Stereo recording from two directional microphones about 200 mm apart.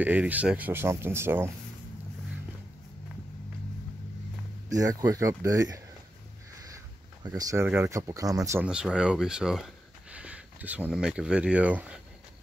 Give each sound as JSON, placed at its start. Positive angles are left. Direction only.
{"t": 0.0, "sound": "speech", "side_deg": -10}
{"t": 4.6, "sound": "speech", "side_deg": -15}
{"t": 7.2, "sound": "speech", "side_deg": -15}
{"t": 8.6, "sound": "speech", "side_deg": -5}